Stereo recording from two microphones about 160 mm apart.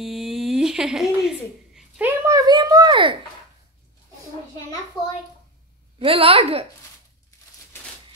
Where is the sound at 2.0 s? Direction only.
20° right (ahead or behind).